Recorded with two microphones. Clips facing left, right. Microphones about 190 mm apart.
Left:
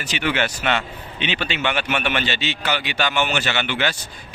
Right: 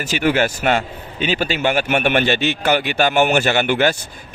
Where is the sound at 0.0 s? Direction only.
45° right (ahead or behind).